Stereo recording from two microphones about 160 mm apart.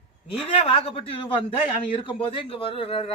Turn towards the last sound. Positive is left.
turn(degrees=35)  # may be behind; listen again after turning